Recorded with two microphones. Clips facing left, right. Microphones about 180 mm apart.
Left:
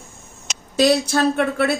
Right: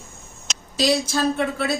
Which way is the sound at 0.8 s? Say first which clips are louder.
Left 4 dB; 60° left (ahead or behind).